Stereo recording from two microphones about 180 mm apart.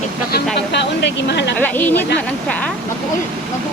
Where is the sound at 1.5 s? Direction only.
10° left (ahead or behind).